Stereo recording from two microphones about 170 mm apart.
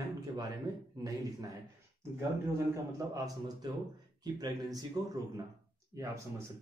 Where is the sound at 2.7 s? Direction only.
20° right (ahead or behind).